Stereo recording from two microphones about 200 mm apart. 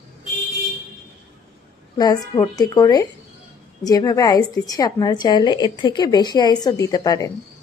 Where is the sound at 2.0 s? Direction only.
20° left (ahead or behind).